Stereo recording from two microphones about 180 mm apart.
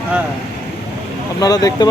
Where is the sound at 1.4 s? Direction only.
20° left (ahead or behind).